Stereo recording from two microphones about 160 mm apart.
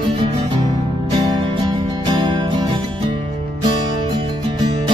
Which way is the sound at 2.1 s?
30° right (ahead or behind).